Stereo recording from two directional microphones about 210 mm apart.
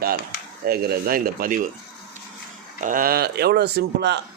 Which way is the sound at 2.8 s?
40° right (ahead or behind).